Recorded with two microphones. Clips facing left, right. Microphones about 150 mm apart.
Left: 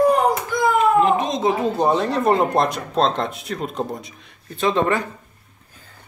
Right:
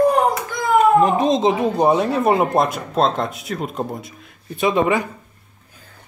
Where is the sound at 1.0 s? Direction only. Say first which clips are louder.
Right 2 dB; 40° right (ahead or behind).